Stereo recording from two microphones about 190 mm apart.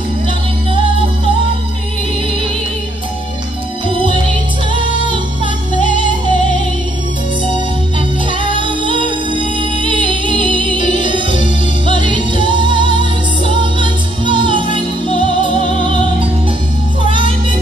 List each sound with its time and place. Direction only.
8.3 s music: 25° right (ahead or behind)